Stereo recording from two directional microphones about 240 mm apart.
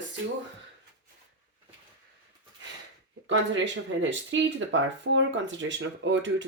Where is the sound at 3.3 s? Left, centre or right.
Right.